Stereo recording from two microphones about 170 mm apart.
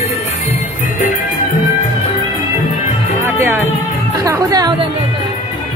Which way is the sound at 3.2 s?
15° right (ahead or behind).